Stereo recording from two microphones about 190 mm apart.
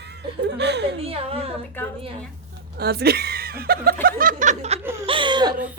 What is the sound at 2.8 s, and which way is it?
Speech, 55° right (ahead or behind).